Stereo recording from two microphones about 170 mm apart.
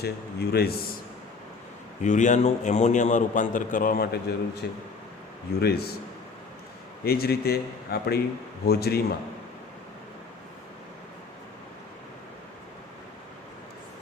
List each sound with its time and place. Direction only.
0.0 s a man's voice: 70° left (ahead or behind)
2.0 s a man's voice: 45° left (ahead or behind); by 6.0 s 70° left (ahead or behind)
7.0 s a man's voice: 65° left (ahead or behind)